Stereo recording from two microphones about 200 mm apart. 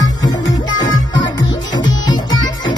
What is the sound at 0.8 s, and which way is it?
Music, 70° left (ahead or behind).